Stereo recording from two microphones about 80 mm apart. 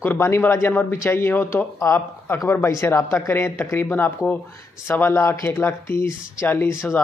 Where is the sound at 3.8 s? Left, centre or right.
Left.